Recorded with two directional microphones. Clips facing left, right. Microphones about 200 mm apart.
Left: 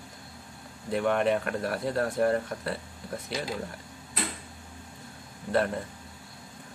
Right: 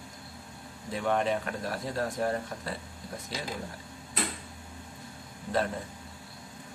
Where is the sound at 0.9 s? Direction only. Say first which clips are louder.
Left 3 dB; 60° left (ahead or behind).